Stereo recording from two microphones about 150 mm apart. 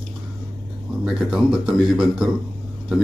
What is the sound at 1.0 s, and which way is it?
Speech, 5° right (ahead or behind).